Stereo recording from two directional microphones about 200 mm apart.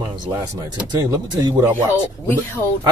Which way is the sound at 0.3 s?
15° right (ahead or behind).